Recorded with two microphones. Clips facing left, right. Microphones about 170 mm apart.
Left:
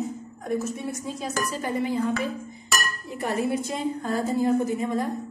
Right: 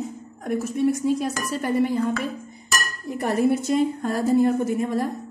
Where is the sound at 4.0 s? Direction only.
60° right (ahead or behind).